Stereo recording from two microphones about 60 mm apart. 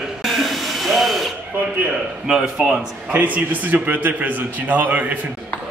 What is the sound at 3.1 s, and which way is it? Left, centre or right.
A man's voice, right.